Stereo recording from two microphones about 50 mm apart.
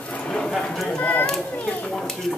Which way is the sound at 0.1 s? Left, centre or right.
Centre.